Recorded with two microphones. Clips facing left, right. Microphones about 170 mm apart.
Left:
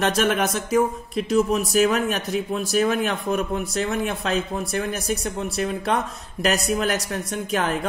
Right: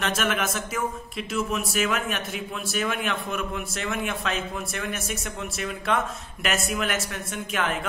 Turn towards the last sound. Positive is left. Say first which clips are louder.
# left 4 dB
turn(degrees=35)  # may be behind; listen again after turning